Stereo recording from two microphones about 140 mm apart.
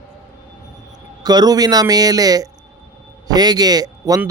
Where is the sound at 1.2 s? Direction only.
30° right (ahead or behind).